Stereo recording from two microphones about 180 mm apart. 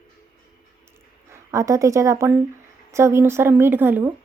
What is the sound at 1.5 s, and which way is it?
A woman's voice, 15° right (ahead or behind).